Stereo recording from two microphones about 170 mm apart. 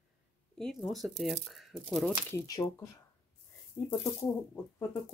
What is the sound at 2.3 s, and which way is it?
Speech, 20° left (ahead or behind).